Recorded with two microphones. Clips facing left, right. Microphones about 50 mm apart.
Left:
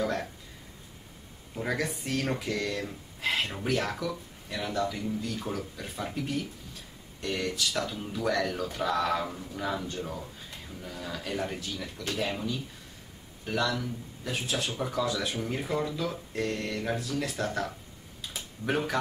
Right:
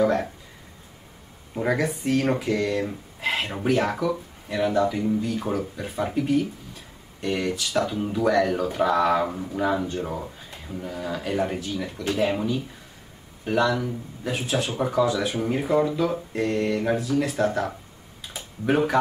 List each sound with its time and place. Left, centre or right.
0.0 s a sound: centre
1.5 s speech: centre
18.2 s typing: centre